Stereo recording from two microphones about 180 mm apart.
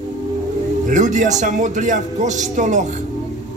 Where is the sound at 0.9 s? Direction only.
40° right (ahead or behind).